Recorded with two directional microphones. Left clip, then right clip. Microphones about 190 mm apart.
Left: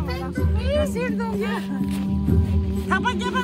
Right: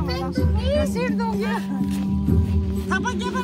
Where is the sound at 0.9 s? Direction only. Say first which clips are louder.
Right 1 dB; 35° right (ahead or behind).